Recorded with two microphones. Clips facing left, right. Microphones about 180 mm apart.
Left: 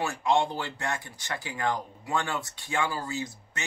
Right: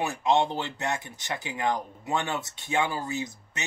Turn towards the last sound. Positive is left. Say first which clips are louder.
# right 1 dB
turn(degrees=-20)  # may be behind; listen again after turning